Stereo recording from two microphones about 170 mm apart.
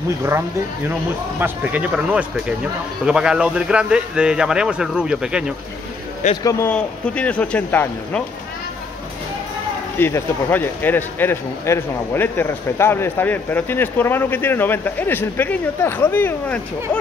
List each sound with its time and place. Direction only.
1.4 s speech: 10° right (ahead or behind)
6.2 s a man's voice: 45° left (ahead or behind)
6.7 s speech: 5° left (ahead or behind)
9.9 s speech: 15° left (ahead or behind)